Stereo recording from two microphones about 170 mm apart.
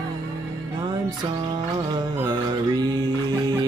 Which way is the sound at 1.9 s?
25° right (ahead or behind).